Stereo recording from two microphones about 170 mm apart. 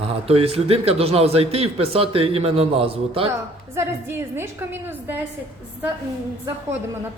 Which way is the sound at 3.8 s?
15° right (ahead or behind).